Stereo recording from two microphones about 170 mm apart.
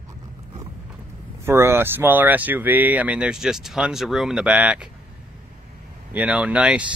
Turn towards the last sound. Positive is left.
turn(degrees=-5)  # may be behind; listen again after turning